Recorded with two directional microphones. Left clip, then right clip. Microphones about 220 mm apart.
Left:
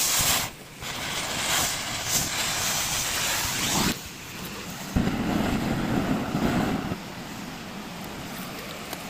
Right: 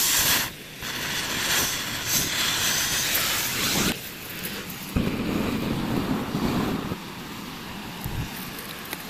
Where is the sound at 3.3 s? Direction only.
15° left (ahead or behind).